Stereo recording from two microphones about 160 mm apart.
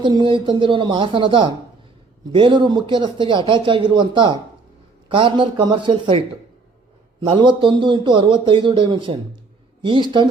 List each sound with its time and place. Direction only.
0.0 s a man's voice: 30° right (ahead or behind)
7.2 s a man's voice: 30° right (ahead or behind)